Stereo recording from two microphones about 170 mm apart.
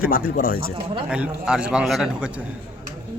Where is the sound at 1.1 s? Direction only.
5° right (ahead or behind).